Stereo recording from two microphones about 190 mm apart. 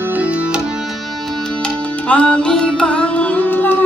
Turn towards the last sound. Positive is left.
turn(degrees=10)  # may be behind; listen again after turning